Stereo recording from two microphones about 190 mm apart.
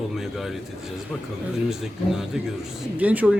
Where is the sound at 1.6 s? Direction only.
Centre (ahead or behind).